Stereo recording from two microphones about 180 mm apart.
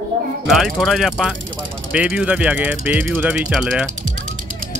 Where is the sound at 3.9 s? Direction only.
45° right (ahead or behind).